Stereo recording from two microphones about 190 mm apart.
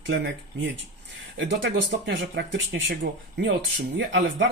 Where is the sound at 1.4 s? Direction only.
70° right (ahead or behind).